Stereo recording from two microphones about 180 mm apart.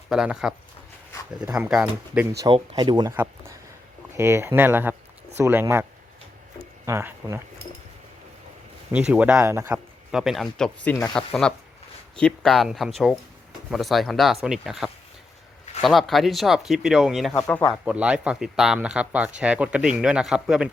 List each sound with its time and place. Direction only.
0.1 s speech: 5° right (ahead or behind)
1.5 s speech: 5° right (ahead or behind)
2.4 s speech: 25° right (ahead or behind)
3.2 s a sound: 15° right (ahead or behind)
4.2 s speech: 15° right (ahead or behind)
6.8 s speech: 15° right (ahead or behind)
8.9 s speech: 5° right (ahead or behind)
9.7 s speech: 5° right (ahead or behind)
17.3 s speech: 10° left (ahead or behind)
17.8 s speech: 5° right (ahead or behind)